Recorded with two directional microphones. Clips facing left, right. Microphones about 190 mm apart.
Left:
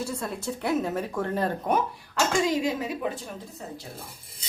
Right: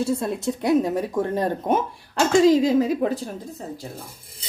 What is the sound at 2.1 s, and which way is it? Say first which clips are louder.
Speech: right 8 dB; 35° right (ahead or behind).